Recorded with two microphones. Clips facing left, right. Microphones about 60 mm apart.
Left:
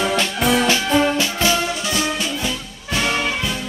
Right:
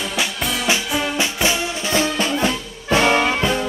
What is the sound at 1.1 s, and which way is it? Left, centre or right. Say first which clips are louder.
Music: left 1 dB; right.